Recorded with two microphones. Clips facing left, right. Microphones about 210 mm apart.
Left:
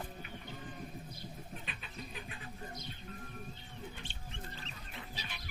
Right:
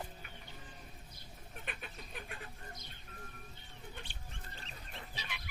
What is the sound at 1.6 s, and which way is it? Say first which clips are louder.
Fowl: left 1 dB; 55° right (ahead or behind).